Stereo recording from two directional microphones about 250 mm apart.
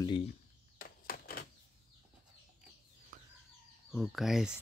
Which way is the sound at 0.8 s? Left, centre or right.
Left.